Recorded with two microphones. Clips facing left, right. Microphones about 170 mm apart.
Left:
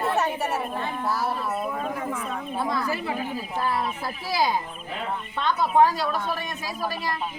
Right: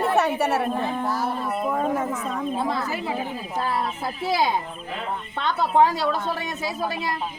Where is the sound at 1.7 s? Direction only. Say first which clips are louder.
Right 5 dB; 40° right (ahead or behind).